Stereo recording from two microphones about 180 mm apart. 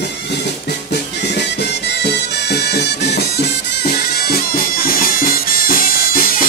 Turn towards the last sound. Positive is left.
turn(degrees=55)  # may be behind; listen again after turning